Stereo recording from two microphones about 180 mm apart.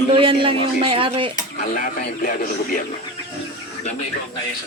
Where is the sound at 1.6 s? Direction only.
45° left (ahead or behind).